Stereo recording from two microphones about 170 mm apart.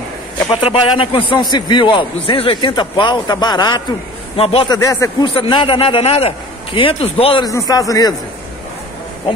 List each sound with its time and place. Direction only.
0.5 s a man's voice: 30° left (ahead or behind)
4.7 s speech: 20° left (ahead or behind)
5.2 s a man's voice: 30° left (ahead or behind)
7.4 s a man's voice: 20° left (ahead or behind)